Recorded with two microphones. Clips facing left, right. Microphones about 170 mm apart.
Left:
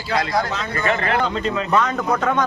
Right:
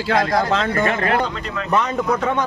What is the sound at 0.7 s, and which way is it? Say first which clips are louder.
Speech: right 2 dB; 45° right (ahead or behind).